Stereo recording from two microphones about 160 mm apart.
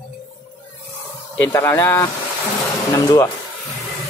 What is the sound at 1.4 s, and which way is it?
Speech, 15° left (ahead or behind).